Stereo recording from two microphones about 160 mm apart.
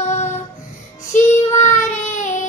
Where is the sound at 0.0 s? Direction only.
45° left (ahead or behind).